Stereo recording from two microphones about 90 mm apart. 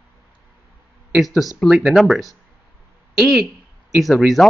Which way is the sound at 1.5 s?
5° right (ahead or behind).